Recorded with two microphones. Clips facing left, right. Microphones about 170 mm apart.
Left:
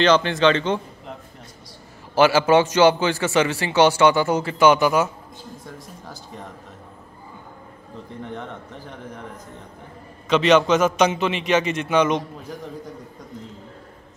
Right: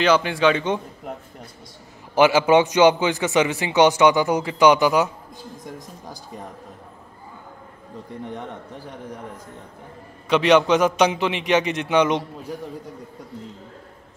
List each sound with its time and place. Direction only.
0.0 s a man's voice: 10° right (ahead or behind)
2.1 s a man's voice: 15° right (ahead or behind)
10.2 s a man's voice: 15° right (ahead or behind)